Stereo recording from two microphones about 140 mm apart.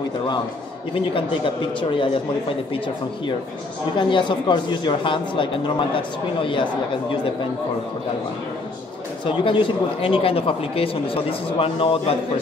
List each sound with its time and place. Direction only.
1.1 s speech: 40° left (ahead or behind)
4.1 s speech: 35° left (ahead or behind)
9.2 s speech: 35° left (ahead or behind)